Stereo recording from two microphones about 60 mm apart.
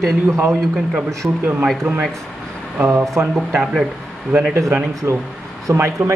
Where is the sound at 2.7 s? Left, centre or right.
Right.